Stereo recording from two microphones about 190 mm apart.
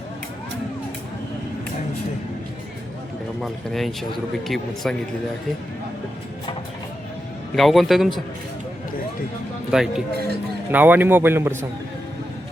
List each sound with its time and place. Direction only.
3.4 s a man's voice: centre (ahead or behind)
7.5 s a man's voice: centre (ahead or behind)
9.7 s a man's voice: 5° right (ahead or behind)
10.2 s music: 55° right (ahead or behind)
10.7 s a man's voice: 10° right (ahead or behind)